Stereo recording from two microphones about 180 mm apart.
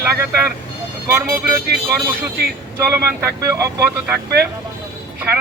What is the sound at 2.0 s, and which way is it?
Speech, 5° right (ahead or behind).